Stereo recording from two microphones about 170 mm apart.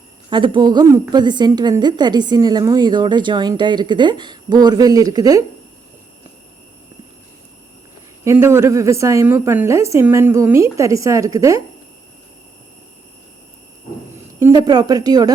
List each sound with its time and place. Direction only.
0.3 s a woman's voice: 30° right (ahead or behind)
8.2 s a woman's voice: 15° right (ahead or behind)
14.3 s a woman's voice: 20° right (ahead or behind)